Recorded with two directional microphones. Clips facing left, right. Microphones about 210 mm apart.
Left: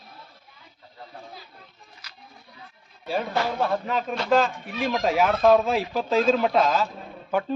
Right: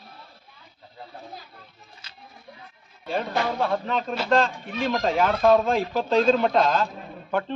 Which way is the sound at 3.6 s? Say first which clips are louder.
Even; 5° left (ahead or behind).